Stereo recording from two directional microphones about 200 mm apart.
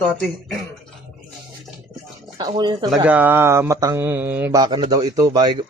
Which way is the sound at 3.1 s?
10° right (ahead or behind).